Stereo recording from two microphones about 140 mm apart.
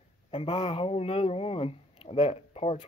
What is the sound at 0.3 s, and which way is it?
Speech, 45° left (ahead or behind).